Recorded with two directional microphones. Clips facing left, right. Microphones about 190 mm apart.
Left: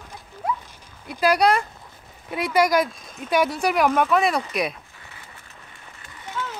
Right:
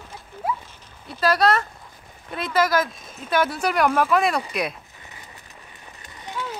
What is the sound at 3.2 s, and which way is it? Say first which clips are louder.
Speech: left 1 dB; 15° left (ahead or behind).